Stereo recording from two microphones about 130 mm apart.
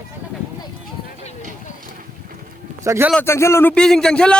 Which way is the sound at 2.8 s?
20° right (ahead or behind).